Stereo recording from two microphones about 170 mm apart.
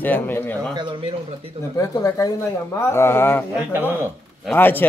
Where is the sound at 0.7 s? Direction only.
25° right (ahead or behind).